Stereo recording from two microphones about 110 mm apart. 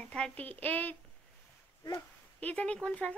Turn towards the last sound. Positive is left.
turn(degrees=10)  # may be behind; listen again after turning